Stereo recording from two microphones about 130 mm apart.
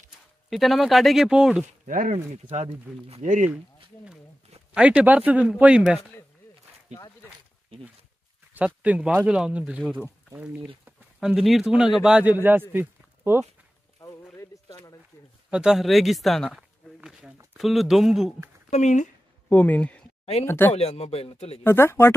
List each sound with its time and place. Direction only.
0.5 s speech: centre (ahead or behind)
1.9 s speech: 90° right
2.5 s speech: 60° right (ahead or behind); by 3.4 s 75° right (ahead or behind)
3.4 s speech: 10° right (ahead or behind)
6.9 s speech: 60° right (ahead or behind)
8.5 s speech: 10° right (ahead or behind)
12.7 s a sound: 20° right (ahead or behind)
14.0 s a sound: 35° left (ahead or behind)
14.3 s a sound: 25° left (ahead or behind)
15.5 s speech: 5° right (ahead or behind)
18.7 s speech: 65° left (ahead or behind)
19.5 s speech: 10° left (ahead or behind)
20.7 s speech: 50° left (ahead or behind)
21.6 s speech: 15° left (ahead or behind)